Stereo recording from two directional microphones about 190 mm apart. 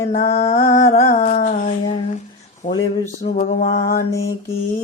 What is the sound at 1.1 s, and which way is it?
Humming, 40° left (ahead or behind).